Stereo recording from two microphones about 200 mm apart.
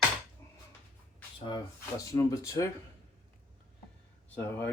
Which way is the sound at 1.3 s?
20° left (ahead or behind).